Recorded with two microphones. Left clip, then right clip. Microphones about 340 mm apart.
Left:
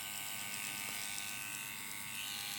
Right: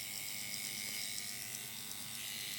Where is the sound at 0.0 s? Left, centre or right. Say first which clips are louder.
Left 1 dB; centre.